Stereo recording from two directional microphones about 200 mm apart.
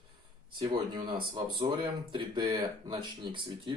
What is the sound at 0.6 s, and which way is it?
Speech, 20° right (ahead or behind).